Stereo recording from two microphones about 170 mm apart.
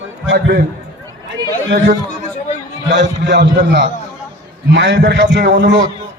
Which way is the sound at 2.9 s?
90° right.